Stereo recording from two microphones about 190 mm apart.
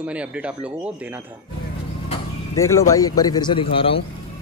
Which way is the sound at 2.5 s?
15° left (ahead or behind).